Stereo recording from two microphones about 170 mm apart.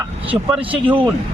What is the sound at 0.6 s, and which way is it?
Speech, 30° right (ahead or behind).